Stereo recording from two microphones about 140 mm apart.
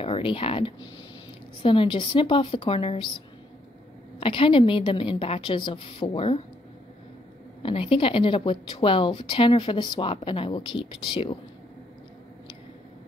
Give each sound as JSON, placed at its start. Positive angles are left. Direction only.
{"t": 0.0, "sound": "a woman's voice", "side_deg": 40}
{"t": 4.2, "sound": "a woman's voice", "side_deg": 40}
{"t": 7.6, "sound": "a woman's voice", "side_deg": 40}